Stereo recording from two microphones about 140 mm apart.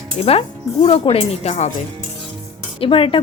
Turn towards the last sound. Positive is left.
turn(degrees=40)  # may be behind; listen again after turning